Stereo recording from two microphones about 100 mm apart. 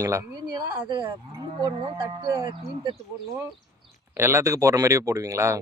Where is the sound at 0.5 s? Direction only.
50° right (ahead or behind).